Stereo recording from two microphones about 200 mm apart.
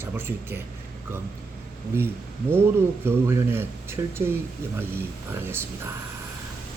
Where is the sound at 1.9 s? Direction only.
10° right (ahead or behind).